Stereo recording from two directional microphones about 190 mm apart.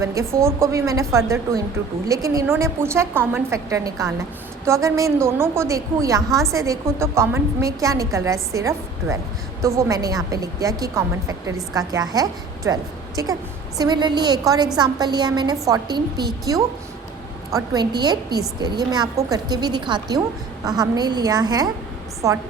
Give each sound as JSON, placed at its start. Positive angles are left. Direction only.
{"t": 0.0, "sound": "a woman's voice", "side_deg": -15}